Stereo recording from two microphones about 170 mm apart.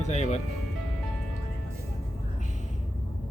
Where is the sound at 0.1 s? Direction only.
40° left (ahead or behind).